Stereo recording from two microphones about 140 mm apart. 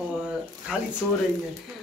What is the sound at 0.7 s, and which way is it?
Speech, 5° right (ahead or behind).